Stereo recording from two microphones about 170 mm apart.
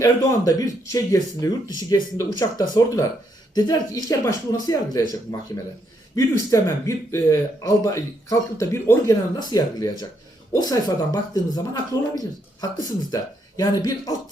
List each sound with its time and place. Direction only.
0.0 s speech: 20° left (ahead or behind)
6.1 s speech: 20° left (ahead or behind)